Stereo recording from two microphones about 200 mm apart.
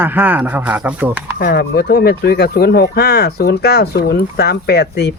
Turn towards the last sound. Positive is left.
turn(degrees=55)  # may be behind; listen again after turning